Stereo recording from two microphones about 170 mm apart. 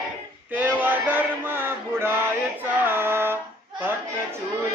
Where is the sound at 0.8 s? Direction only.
10° right (ahead or behind).